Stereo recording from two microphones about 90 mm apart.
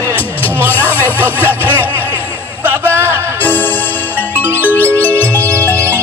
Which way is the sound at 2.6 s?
20° right (ahead or behind).